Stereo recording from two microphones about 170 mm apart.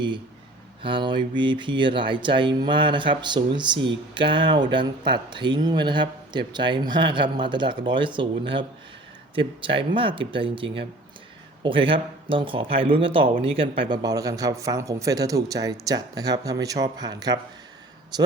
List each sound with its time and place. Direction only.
0.8 s speech: 30° right (ahead or behind)
13.9 s speech: 20° right (ahead or behind)